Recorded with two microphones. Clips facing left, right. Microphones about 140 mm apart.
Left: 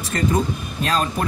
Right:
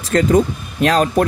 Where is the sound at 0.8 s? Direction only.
70° right (ahead or behind).